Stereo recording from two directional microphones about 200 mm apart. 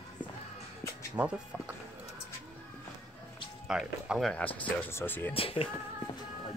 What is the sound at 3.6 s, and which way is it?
Speech, centre (ahead or behind).